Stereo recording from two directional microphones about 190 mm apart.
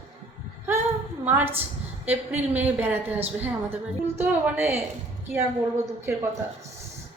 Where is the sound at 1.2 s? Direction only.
10° right (ahead or behind).